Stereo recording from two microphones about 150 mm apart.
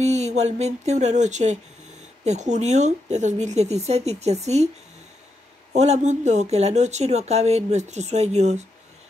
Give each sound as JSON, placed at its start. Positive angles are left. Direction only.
{"t": 0.0, "sound": "speech", "side_deg": -50}
{"t": 5.7, "sound": "speech", "side_deg": -50}